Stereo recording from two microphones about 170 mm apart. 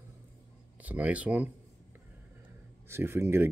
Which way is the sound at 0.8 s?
10° right (ahead or behind).